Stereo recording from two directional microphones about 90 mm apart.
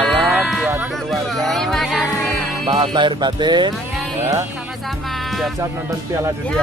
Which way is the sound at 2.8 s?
60° right (ahead or behind).